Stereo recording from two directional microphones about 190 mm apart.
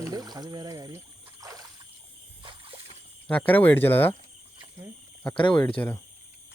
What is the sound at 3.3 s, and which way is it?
Speech, 5° left (ahead or behind).